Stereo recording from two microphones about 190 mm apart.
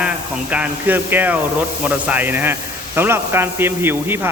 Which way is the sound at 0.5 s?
10° right (ahead or behind).